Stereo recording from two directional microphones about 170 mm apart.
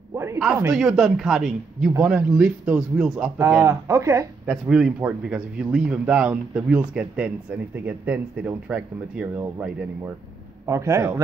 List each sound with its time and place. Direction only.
0.6 s speech: 5° right (ahead or behind)
4.5 s speech: 5° right (ahead or behind)
10.7 s speech: 15° right (ahead or behind)